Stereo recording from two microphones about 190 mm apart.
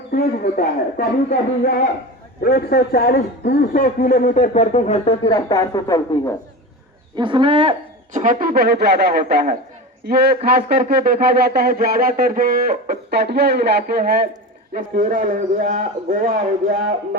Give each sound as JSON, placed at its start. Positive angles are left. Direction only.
{"t": 0.1, "sound": "a man's voice", "side_deg": 50}
{"t": 7.2, "sound": "speech", "side_deg": -25}
{"t": 8.1, "sound": "speech", "side_deg": -45}
{"t": 12.9, "sound": "speech", "side_deg": -60}